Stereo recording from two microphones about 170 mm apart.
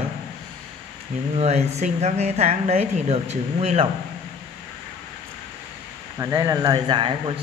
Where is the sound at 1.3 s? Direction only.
40° right (ahead or behind).